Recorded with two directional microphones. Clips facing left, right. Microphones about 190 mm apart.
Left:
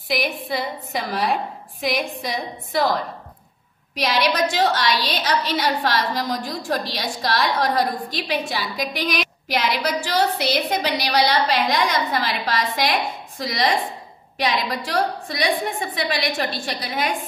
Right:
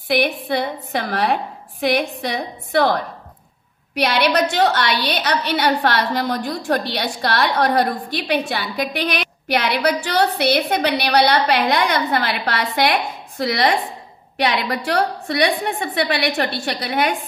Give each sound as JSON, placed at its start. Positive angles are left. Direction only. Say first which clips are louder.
{"t": 0.1, "sound": "a woman's voice", "louder": "right 5 dB", "side_deg": -60}